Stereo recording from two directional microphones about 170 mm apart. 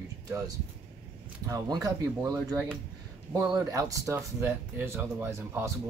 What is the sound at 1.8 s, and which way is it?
Speech, 20° right (ahead or behind).